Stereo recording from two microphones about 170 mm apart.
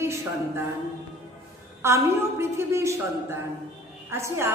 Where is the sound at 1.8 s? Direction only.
15° right (ahead or behind).